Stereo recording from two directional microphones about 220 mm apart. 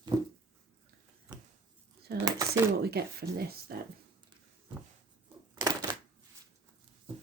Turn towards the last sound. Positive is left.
turn(degrees=-20)  # may be behind; listen again after turning